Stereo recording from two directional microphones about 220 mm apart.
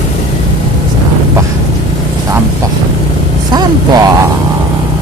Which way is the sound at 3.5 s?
15° right (ahead or behind).